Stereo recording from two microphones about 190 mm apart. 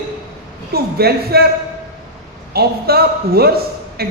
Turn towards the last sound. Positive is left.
turn(degrees=-55)  # may be behind; listen again after turning